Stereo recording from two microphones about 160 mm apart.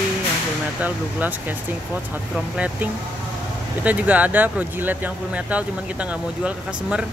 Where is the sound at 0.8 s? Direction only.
10° right (ahead or behind).